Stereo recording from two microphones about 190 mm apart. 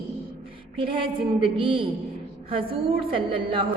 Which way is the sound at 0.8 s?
30° right (ahead or behind).